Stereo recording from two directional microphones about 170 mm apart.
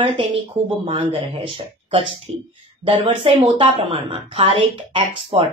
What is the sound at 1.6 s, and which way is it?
A woman's voice, 30° right (ahead or behind).